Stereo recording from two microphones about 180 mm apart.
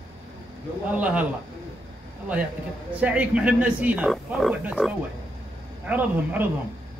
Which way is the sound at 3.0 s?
5° right (ahead or behind).